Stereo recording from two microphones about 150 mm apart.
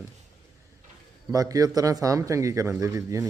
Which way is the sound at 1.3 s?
25° right (ahead or behind).